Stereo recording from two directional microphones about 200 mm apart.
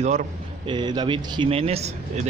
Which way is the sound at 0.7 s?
25° right (ahead or behind).